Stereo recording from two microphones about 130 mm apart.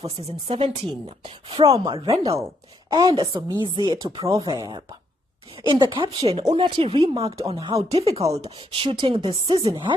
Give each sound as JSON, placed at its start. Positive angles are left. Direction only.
{"t": 0.0, "sound": "a woman's voice", "side_deg": -45}
{"t": 2.2, "sound": "a woman's voice", "side_deg": -25}